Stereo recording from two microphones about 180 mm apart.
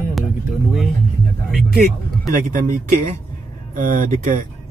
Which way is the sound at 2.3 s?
45° right (ahead or behind).